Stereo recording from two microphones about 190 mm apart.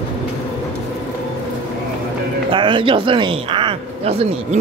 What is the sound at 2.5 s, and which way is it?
Speech, 25° right (ahead or behind).